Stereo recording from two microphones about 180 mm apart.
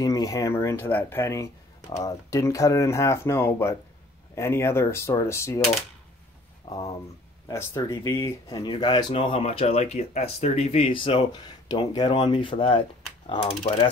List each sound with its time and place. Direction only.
0.0 s speech: 20° left (ahead or behind)
7.4 s speech: 15° left (ahead or behind); by 13.7 s 35° left (ahead or behind)